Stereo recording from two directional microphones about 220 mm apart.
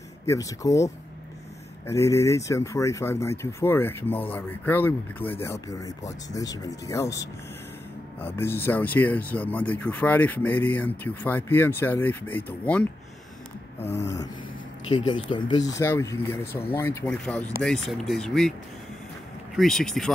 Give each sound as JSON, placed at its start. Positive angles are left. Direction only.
{"t": 0.3, "sound": "speech", "side_deg": 15}
{"t": 14.9, "sound": "speech", "side_deg": 20}
{"t": 19.5, "sound": "speech", "side_deg": 0}